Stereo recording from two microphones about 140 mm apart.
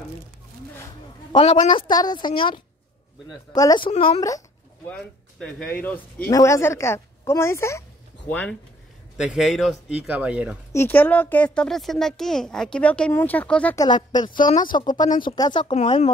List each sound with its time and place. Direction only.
1.3 s a woman's voice: 35° left (ahead or behind)
4.8 s a woman's voice: 10° left (ahead or behind)
8.3 s speech: 5° left (ahead or behind)
9.1 s speech: 5° right (ahead or behind)
10.7 s speech: 15° left (ahead or behind)
13.7 s a woman's voice: 30° left (ahead or behind)
14.5 s speech: 75° left (ahead or behind)
14.8 s a woman's voice: 30° left (ahead or behind)